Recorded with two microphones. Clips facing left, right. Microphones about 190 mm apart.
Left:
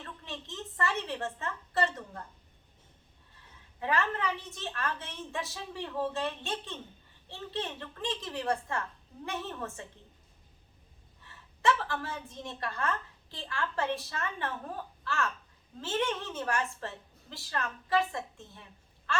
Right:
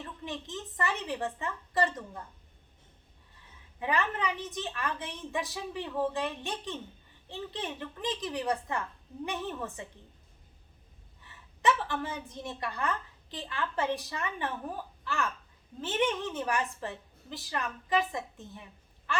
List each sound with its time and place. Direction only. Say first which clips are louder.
0.0 s a sound: right 4 dB; 15° right (ahead or behind)
3.8 s a woman's voice: even; 15° right (ahead or behind)
11.6 s a woman's voice: right 1 dB; 20° right (ahead or behind)